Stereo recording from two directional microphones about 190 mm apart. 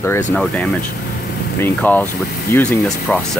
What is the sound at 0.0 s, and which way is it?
Speech, 10° left (ahead or behind).